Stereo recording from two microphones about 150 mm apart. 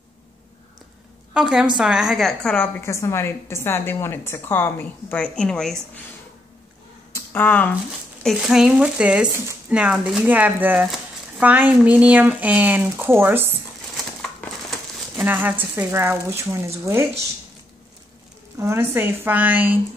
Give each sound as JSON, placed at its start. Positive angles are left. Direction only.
{"t": 1.3, "sound": "a woman's voice", "side_deg": -5}
{"t": 7.2, "sound": "speech", "side_deg": 10}
{"t": 8.2, "sound": "speech", "side_deg": 0}
{"t": 15.0, "sound": "speech", "side_deg": -10}
{"t": 18.6, "sound": "speech", "side_deg": -15}